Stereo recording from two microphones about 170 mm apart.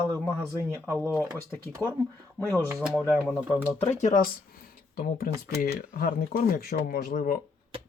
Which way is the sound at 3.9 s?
50° left (ahead or behind).